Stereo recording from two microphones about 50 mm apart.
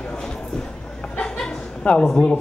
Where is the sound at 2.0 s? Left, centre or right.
Centre.